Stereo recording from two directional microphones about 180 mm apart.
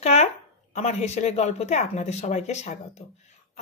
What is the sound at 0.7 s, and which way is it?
Speech, 40° left (ahead or behind).